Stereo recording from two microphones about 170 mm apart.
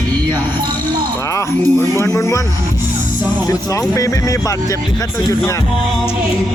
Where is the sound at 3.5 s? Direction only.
20° left (ahead or behind).